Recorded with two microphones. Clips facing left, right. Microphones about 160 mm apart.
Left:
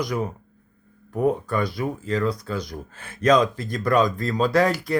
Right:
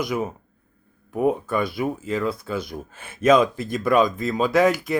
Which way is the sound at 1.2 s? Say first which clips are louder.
Right 1 dB; 20° right (ahead or behind).